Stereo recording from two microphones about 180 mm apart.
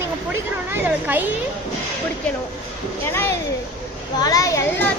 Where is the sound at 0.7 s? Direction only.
10° right (ahead or behind).